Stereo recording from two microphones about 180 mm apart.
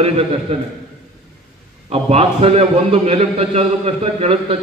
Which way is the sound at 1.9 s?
35° right (ahead or behind).